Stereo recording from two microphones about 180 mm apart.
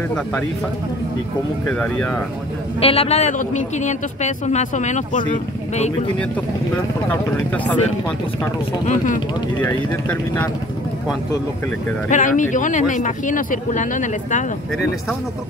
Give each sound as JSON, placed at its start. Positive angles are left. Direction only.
{"t": 1.7, "sound": "speech", "side_deg": 5}
{"t": 2.8, "sound": "speech", "side_deg": 35}
{"t": 7.1, "sound": "speech", "side_deg": 10}
{"t": 8.8, "sound": "speech", "side_deg": 45}
{"t": 9.6, "sound": "speech", "side_deg": 10}
{"t": 12.1, "sound": "speech", "side_deg": 45}